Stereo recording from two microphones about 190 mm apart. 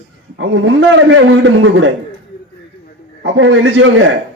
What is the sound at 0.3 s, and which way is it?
A man's voice, 90° right.